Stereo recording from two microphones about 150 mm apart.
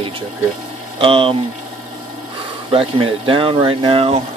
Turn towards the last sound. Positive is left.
turn(degrees=-40)  # may be behind; listen again after turning